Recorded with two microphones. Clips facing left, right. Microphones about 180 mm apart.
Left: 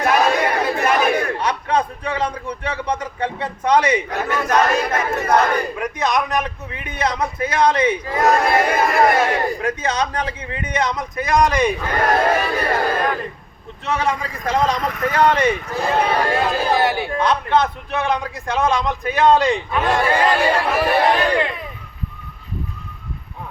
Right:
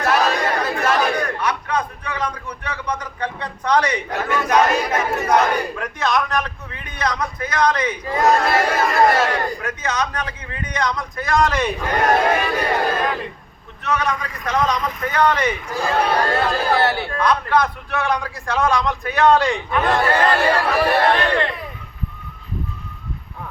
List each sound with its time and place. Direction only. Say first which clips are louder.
0.0 s chatter: left 2 dB; 15° left (ahead or behind)
1.1 s a man's voice: left 2 dB; 30° left (ahead or behind)
4.3 s speech: right 1 dB; centre (ahead or behind)
5.7 s a man's voice: left 1 dB; 15° left (ahead or behind)
8.4 s a man's voice: left 1 dB; 15° left (ahead or behind)
12.3 s speech: even; 5° right (ahead or behind)
13.8 s a man's voice: left 1 dB; 25° left (ahead or behind)
15.8 s speech: even; 5° left (ahead or behind)
17.2 s a man's voice: even; 25° left (ahead or behind); by 21.5 s 10° left (ahead or behind)